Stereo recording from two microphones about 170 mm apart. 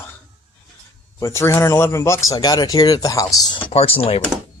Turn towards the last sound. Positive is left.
turn(degrees=35)  # may be behind; listen again after turning